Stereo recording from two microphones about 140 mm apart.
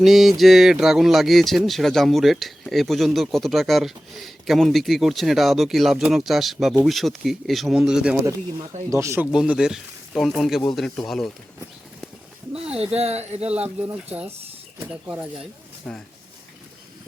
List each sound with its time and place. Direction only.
0.0 s speech: centre (ahead or behind)
8.9 s speech: 20° right (ahead or behind)
9.2 s speech: 5° right (ahead or behind)
12.5 s speech: 45° right (ahead or behind)
14.8 s speech: 15° right (ahead or behind)
15.9 s speech: 10° left (ahead or behind)